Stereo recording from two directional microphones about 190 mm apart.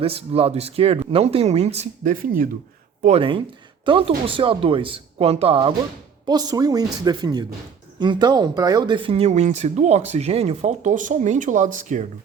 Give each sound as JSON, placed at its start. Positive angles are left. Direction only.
{"t": 0.0, "sound": "speech", "side_deg": -30}
{"t": 3.0, "sound": "speech", "side_deg": -30}